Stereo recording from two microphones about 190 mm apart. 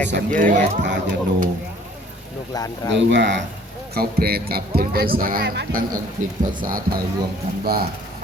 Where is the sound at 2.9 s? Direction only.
70° right (ahead or behind).